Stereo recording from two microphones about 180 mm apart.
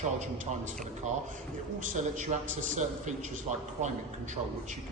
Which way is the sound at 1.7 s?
45° right (ahead or behind).